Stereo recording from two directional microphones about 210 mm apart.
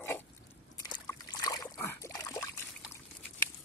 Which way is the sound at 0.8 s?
20° left (ahead or behind).